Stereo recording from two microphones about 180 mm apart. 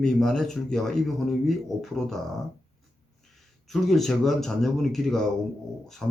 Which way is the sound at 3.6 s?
Centre (ahead or behind).